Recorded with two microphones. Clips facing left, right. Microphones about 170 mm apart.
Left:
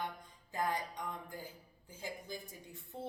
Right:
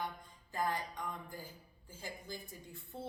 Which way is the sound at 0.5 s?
15° left (ahead or behind).